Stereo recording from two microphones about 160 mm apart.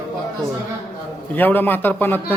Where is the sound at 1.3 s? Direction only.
10° left (ahead or behind).